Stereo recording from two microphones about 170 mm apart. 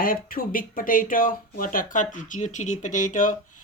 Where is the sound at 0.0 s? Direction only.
55° left (ahead or behind).